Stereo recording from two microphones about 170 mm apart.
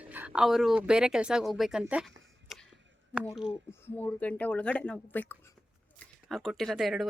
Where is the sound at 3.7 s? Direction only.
10° left (ahead or behind).